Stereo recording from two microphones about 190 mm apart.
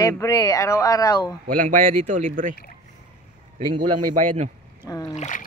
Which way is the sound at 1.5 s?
45° right (ahead or behind).